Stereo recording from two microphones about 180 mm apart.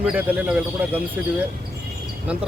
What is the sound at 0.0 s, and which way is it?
Speech, 10° right (ahead or behind).